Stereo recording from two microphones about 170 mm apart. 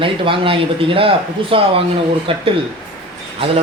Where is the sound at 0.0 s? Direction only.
30° right (ahead or behind).